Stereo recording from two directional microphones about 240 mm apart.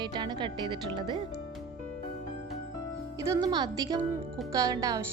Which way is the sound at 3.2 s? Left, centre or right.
Centre.